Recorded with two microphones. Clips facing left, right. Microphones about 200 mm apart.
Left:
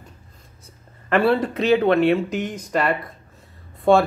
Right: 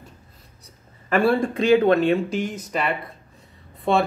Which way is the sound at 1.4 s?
50° right (ahead or behind).